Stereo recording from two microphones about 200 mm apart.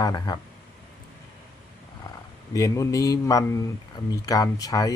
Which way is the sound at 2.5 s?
15° left (ahead or behind).